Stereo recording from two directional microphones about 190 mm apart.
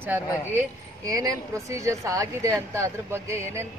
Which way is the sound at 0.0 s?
10° right (ahead or behind).